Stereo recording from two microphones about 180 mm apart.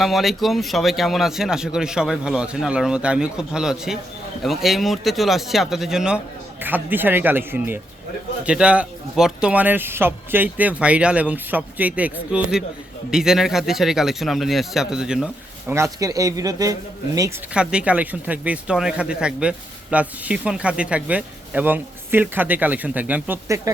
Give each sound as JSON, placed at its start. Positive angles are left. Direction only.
{"t": 0.0, "sound": "speech", "side_deg": 0}
{"t": 15.7, "sound": "speech", "side_deg": -15}
{"t": 17.5, "sound": "speech", "side_deg": -5}